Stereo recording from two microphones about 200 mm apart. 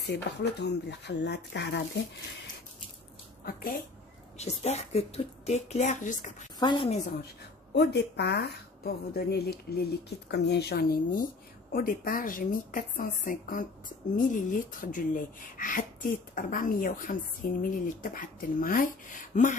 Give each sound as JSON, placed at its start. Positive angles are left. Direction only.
{"t": 0.0, "sound": "speech", "side_deg": 55}
{"t": 4.4, "sound": "a woman's voice", "side_deg": 35}
{"t": 6.6, "sound": "a woman's voice", "side_deg": 25}
{"t": 7.7, "sound": "a woman's voice", "side_deg": 55}